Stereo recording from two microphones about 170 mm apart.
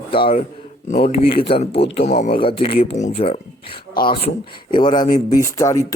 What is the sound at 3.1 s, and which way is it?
Speech, 35° left (ahead or behind).